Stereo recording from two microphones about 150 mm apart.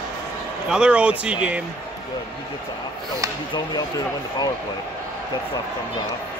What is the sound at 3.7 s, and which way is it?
Speech, 25° left (ahead or behind).